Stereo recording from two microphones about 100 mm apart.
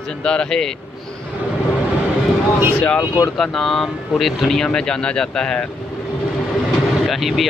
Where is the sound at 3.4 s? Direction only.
5° left (ahead or behind).